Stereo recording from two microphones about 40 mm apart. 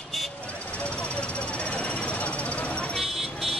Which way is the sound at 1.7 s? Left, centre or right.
Left.